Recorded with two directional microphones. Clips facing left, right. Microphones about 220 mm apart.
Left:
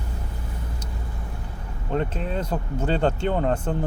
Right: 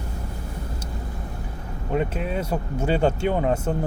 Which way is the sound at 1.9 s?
10° right (ahead or behind).